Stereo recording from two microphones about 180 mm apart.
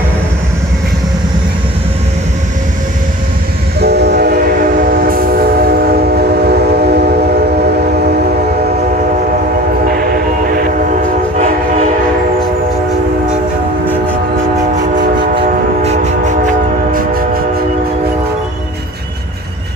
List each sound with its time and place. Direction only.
3.8 s train: 65° right (ahead or behind)
5.0 s train: 55° right (ahead or behind)
10.4 s train: 50° right (ahead or behind)
15.4 s train: 40° right (ahead or behind)
16.9 s train: 55° right (ahead or behind)